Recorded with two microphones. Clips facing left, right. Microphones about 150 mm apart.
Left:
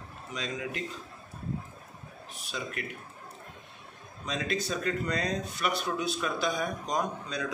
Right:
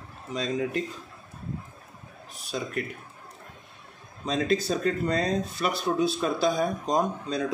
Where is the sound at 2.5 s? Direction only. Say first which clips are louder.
Right 5 dB; 40° right (ahead or behind).